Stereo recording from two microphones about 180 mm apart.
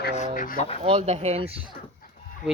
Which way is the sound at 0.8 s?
35° right (ahead or behind).